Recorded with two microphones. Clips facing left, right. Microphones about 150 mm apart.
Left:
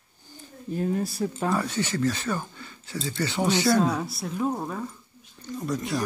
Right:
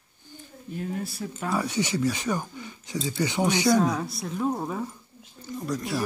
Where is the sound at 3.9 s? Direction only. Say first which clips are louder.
Even; centre (ahead or behind).